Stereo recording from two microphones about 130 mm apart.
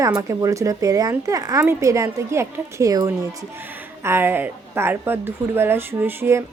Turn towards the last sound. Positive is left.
turn(degrees=-20)  # may be behind; listen again after turning